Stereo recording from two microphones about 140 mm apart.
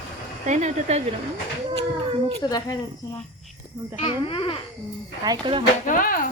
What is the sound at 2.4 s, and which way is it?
Speech, 30° left (ahead or behind).